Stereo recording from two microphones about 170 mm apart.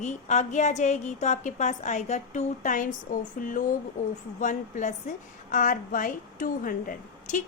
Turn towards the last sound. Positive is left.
turn(degrees=50)  # may be behind; listen again after turning